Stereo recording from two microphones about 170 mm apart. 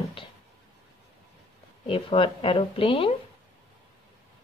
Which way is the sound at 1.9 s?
35° left (ahead or behind).